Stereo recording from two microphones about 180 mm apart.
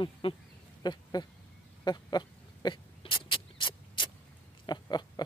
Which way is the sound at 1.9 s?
25° left (ahead or behind).